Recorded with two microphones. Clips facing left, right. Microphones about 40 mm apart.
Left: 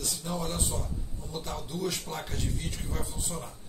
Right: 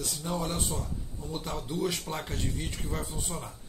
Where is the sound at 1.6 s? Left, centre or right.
Centre.